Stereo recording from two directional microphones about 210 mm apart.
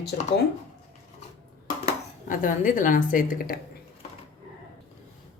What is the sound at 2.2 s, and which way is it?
A woman's voice, 40° left (ahead or behind).